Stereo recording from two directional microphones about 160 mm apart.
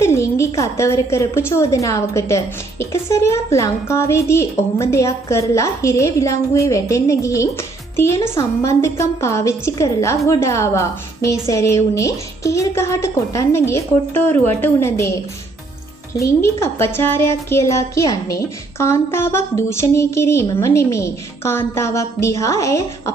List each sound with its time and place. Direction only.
0.0 s a woman's voice: 15° left (ahead or behind)
16.4 s a woman's voice: 15° left (ahead or behind)